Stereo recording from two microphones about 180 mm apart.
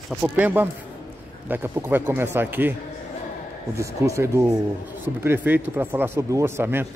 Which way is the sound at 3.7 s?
15° right (ahead or behind).